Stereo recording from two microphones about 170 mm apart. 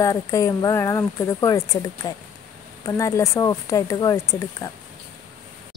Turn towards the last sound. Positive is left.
turn(degrees=20)  # may be behind; listen again after turning